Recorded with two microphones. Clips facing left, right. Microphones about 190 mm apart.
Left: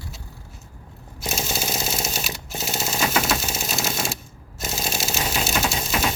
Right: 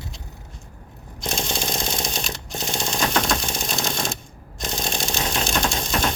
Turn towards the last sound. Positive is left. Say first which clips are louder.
# right 1 dB
turn(degrees=5)  # may be behind; listen again after turning